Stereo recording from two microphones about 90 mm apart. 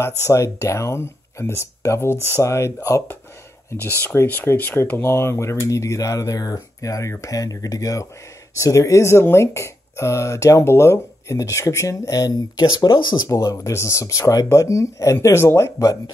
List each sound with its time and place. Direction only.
0.3 s speech: 35° left (ahead or behind)
13.3 s speech: 35° left (ahead or behind)